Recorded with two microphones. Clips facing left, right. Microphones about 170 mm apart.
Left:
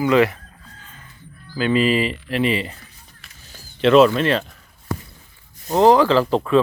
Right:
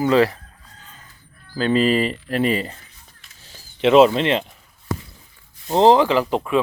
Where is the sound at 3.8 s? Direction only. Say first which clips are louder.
Even; 20° right (ahead or behind).